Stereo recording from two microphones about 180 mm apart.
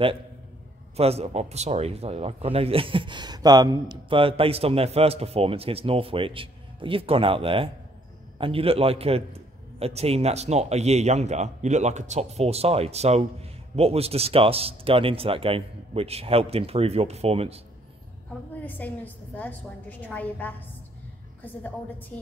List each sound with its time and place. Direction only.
0.9 s a man's voice: 35° right (ahead or behind)
18.6 s a woman's voice: 10° left (ahead or behind)
21.6 s a woman's voice: 10° left (ahead or behind)